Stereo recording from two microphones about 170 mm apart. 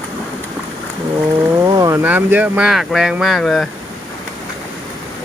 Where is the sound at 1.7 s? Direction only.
20° right (ahead or behind); by 3.6 s centre (ahead or behind).